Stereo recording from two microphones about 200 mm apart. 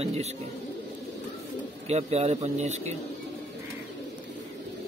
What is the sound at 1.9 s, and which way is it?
A man's voice, 30° right (ahead or behind).